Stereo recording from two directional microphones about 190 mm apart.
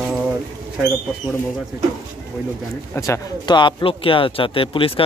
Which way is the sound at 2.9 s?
15° left (ahead or behind).